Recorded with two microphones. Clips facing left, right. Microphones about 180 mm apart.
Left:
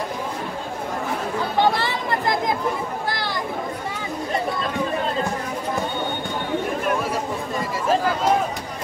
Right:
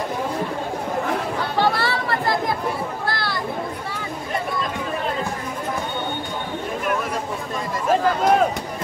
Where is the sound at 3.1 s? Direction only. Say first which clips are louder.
Right 1 dB; 15° left (ahead or behind).